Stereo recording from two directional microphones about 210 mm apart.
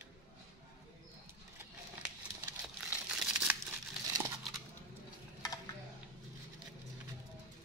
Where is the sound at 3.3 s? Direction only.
10° right (ahead or behind).